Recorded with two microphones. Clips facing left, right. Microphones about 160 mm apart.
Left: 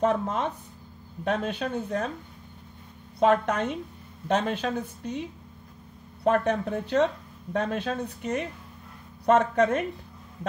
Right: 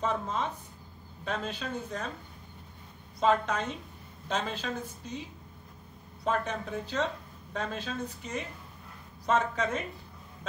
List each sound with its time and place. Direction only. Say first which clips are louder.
0.0 s speech: left 6 dB; 60° left (ahead or behind)
3.2 s speech: left 5 dB; 60° left (ahead or behind)
6.2 s speech: left 8 dB; 60° left (ahead or behind)